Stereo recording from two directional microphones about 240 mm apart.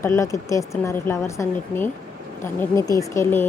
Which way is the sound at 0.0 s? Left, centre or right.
Centre.